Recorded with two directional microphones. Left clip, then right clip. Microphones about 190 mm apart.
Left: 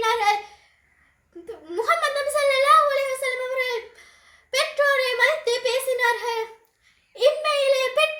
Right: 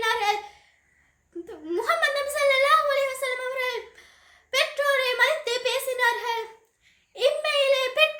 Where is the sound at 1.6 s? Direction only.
20° right (ahead or behind).